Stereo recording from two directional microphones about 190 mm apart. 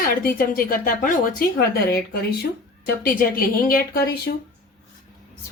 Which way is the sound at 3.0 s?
50° left (ahead or behind).